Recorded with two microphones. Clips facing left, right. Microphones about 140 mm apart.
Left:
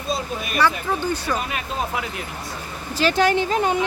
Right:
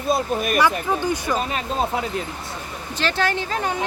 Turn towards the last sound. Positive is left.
turn(degrees=20)  # may be behind; listen again after turning